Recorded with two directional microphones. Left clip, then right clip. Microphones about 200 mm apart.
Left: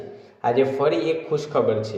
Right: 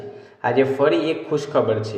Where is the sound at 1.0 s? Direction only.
60° left (ahead or behind).